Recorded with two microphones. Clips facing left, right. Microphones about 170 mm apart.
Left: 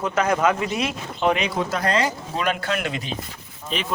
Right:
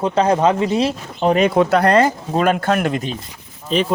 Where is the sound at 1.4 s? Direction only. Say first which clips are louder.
Right 10 dB; 60° right (ahead or behind).